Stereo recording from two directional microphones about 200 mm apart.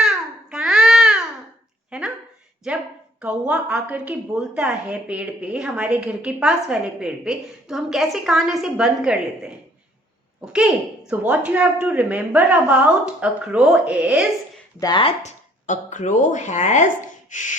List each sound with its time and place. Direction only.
0.0 s babbling: 5° right (ahead or behind)
1.9 s a sound: 5° right (ahead or behind)
2.6 s a woman's voice: 5° right (ahead or behind)
14.8 s speech: 20° left (ahead or behind); by 17.6 s 40° left (ahead or behind)